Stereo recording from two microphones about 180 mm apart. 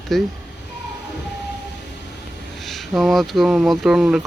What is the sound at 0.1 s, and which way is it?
Speech, centre (ahead or behind).